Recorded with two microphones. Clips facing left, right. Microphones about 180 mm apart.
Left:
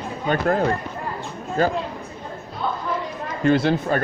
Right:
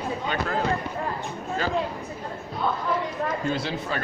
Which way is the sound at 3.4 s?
60° left (ahead or behind).